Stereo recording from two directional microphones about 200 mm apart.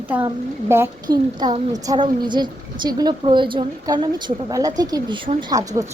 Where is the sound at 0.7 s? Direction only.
15° right (ahead or behind).